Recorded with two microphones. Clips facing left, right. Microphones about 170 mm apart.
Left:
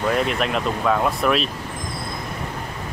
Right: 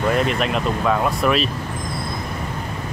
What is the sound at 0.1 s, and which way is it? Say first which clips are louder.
Speech: right 1 dB; centre (ahead or behind).